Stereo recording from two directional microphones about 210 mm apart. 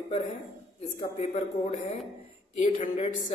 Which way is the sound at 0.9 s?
30° left (ahead or behind).